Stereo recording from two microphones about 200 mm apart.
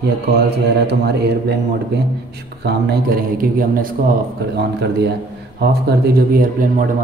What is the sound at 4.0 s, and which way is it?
Speech, 45° right (ahead or behind).